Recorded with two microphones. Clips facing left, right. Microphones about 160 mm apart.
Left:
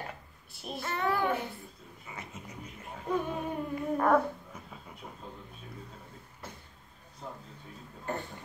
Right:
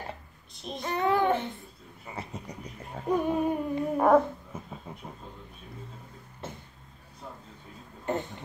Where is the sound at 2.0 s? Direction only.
35° right (ahead or behind).